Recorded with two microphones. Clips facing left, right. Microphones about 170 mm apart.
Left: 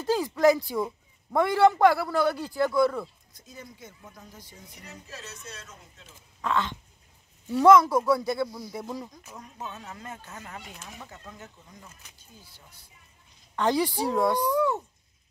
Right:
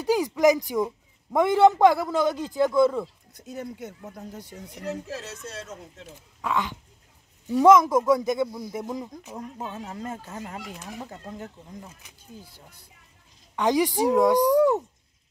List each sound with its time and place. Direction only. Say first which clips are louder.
0.0 s speech: right 2 dB; 15° right (ahead or behind)
3.3 s speech: right 10 dB; 65° right (ahead or behind); by 5.5 s 90° right
6.4 s speech: even; 10° right (ahead or behind)
9.6 s speech: right 3 dB; 30° right (ahead or behind)
13.6 s speech: right 3 dB; 15° right (ahead or behind)
14.4 s speech: right 6 dB; 40° right (ahead or behind)